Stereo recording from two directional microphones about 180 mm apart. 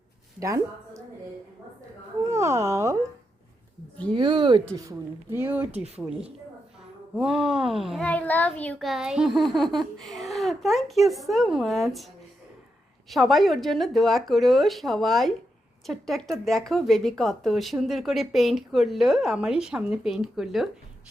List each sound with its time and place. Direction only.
0.3 s a woman's voice: 15° right (ahead or behind)
2.2 s speech: 15° right (ahead or behind)
4.1 s a woman's voice: 25° right (ahead or behind); by 12.0 s centre (ahead or behind)
13.1 s a child's voice: centre (ahead or behind)